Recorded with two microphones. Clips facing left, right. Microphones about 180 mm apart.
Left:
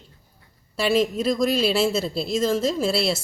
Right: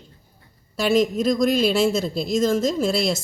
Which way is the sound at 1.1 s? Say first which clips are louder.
Right 2 dB; 5° left (ahead or behind).